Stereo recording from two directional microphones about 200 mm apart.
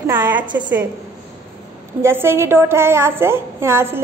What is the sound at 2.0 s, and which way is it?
A woman's voice, 10° right (ahead or behind).